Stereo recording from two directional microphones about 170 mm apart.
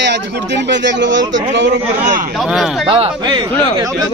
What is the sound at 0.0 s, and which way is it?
Speech, 90° right.